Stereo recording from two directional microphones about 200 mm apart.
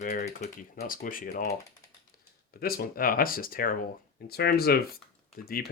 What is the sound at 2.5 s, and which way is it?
Speech, 50° left (ahead or behind).